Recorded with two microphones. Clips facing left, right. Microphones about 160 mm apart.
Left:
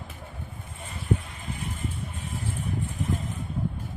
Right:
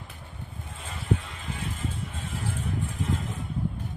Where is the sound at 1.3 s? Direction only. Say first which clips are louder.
Even; 90° right.